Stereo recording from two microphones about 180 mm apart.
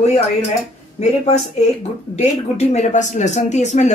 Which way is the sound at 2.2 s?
40° left (ahead or behind).